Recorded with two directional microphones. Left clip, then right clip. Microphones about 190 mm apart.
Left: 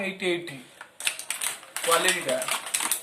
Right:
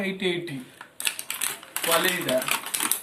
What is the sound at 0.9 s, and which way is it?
Typewriter, 20° right (ahead or behind).